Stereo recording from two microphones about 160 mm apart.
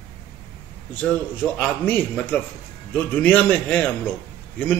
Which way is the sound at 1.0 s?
5° left (ahead or behind).